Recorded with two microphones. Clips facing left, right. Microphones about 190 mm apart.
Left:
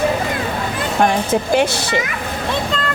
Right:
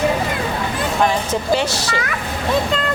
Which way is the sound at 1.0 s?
55° left (ahead or behind).